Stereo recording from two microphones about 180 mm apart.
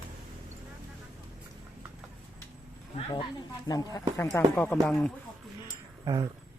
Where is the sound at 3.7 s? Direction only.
20° left (ahead or behind).